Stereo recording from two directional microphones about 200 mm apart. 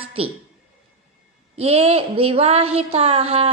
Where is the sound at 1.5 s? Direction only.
30° right (ahead or behind).